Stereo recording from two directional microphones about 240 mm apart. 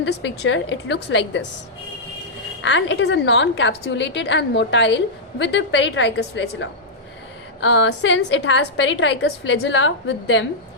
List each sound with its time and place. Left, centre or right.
0.0 s a woman's voice: left
2.6 s a woman's voice: left